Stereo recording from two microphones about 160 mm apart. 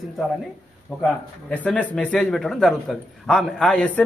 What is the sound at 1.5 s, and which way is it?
A man's voice, 10° left (ahead or behind).